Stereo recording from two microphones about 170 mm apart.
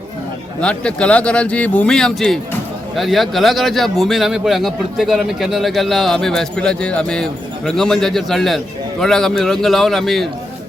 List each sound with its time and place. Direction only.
0.6 s a man's voice: 5° left (ahead or behind)